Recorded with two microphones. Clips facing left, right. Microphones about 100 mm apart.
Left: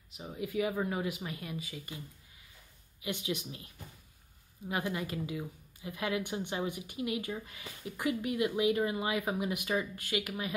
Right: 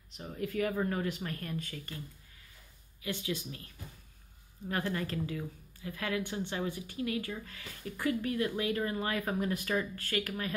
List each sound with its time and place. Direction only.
0.1 s speech: 10° left (ahead or behind)
3.0 s speech: 20° left (ahead or behind)